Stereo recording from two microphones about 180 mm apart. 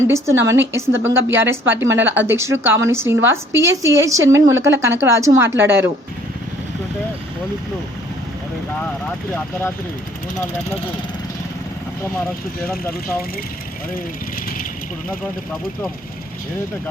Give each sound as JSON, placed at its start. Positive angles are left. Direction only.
{"t": 0.1, "sound": "a woman's voice", "side_deg": -15}